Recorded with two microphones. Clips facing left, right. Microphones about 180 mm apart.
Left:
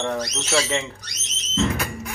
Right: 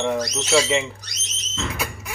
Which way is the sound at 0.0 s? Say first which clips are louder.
Right 3 dB; 10° right (ahead or behind).